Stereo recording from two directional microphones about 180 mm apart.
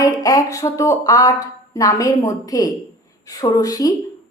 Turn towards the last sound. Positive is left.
turn(degrees=20)  # may be behind; listen again after turning